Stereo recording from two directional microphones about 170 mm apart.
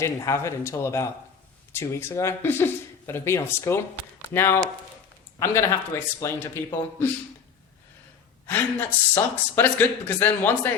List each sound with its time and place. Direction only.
0.0 s speech: 15° left (ahead or behind)
8.4 s speech: 10° left (ahead or behind)